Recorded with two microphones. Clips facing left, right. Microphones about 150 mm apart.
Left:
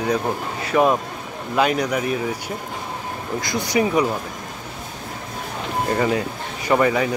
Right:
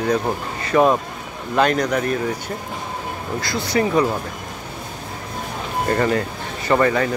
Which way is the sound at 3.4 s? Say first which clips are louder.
Even; 15° left (ahead or behind).